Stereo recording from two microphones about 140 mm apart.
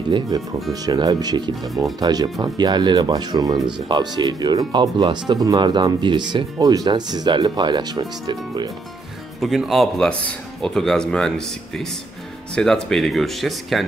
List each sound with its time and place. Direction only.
0.1 s speech: 30° right (ahead or behind)
9.4 s speech: centre (ahead or behind)